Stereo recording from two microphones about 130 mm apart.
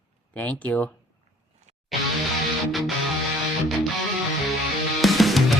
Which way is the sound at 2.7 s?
Centre (ahead or behind).